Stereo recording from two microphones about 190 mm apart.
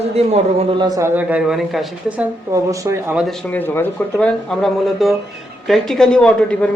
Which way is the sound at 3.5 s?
10° left (ahead or behind).